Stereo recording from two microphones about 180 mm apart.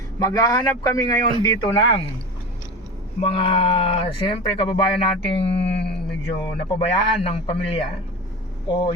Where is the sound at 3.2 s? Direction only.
30° left (ahead or behind).